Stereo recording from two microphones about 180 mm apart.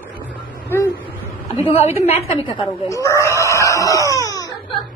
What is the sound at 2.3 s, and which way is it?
Speech, 30° left (ahead or behind).